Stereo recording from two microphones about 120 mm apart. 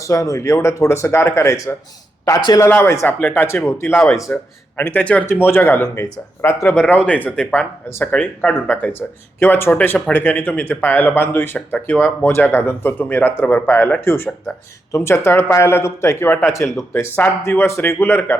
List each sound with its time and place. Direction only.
0.0 s speech: 30° left (ahead or behind)
2.6 s speech: 20° left (ahead or behind)
6.7 s speech: 10° left (ahead or behind)
8.1 s speech: 10° left (ahead or behind)